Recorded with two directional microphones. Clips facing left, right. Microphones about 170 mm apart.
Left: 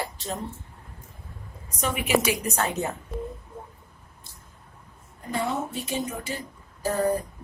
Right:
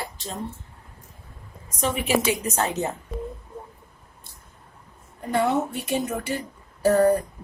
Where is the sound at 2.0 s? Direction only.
25° right (ahead or behind).